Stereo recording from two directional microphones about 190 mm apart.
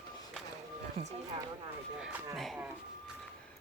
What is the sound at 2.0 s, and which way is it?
Speech, 5° right (ahead or behind).